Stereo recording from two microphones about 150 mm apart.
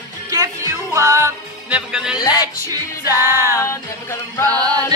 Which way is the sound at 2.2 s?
25° left (ahead or behind).